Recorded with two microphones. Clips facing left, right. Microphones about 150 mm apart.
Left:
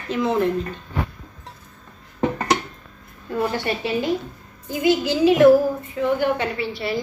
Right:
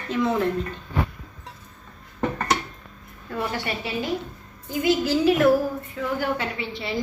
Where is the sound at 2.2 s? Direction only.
15° left (ahead or behind).